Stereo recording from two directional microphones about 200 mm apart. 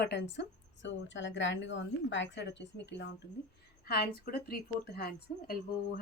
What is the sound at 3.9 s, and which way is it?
A woman's voice, 50° left (ahead or behind).